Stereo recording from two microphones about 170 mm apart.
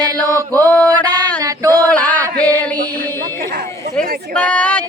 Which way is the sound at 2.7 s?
55° right (ahead or behind).